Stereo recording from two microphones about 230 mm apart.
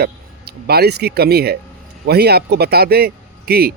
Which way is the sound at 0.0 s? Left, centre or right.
Right.